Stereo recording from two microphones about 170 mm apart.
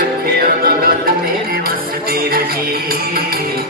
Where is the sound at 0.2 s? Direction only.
60° right (ahead or behind).